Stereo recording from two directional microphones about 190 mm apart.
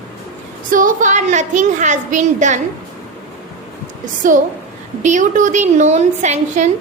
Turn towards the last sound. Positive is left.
turn(degrees=-40)  # may be behind; listen again after turning